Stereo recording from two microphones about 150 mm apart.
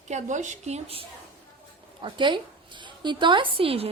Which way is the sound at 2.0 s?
30° right (ahead or behind).